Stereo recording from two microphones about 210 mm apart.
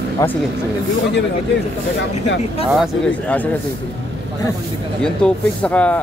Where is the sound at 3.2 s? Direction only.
5° left (ahead or behind).